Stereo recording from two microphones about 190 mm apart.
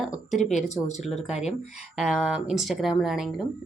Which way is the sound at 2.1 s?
5° right (ahead or behind).